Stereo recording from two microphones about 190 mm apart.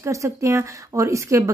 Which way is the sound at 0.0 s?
15° right (ahead or behind).